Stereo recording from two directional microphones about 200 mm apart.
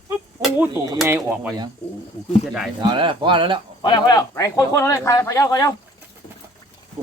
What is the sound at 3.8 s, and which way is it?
Speech, 20° left (ahead or behind).